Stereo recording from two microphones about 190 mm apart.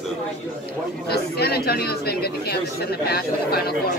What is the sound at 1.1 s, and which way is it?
Speech, 55° left (ahead or behind).